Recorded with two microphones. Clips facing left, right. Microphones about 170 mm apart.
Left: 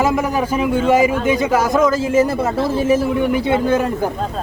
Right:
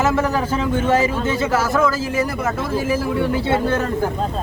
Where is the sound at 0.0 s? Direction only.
15° left (ahead or behind).